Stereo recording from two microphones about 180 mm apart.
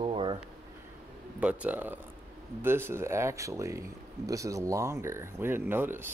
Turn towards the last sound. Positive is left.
turn(degrees=-10)  # may be behind; listen again after turning